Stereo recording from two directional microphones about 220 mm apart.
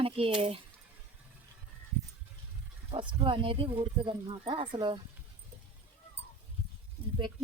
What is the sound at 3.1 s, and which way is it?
A woman's voice, 25° right (ahead or behind).